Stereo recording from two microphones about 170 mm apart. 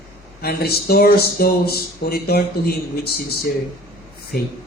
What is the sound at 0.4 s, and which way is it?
Speech, 65° left (ahead or behind).